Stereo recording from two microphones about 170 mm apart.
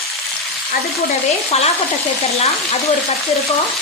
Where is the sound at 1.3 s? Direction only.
40° left (ahead or behind).